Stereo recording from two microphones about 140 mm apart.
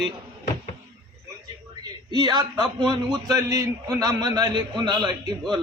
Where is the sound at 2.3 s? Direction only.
35° right (ahead or behind).